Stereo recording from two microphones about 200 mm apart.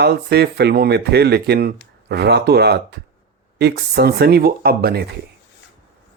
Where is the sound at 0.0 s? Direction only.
55° right (ahead or behind).